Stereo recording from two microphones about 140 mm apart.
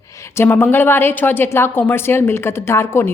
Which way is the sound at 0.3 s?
15° left (ahead or behind).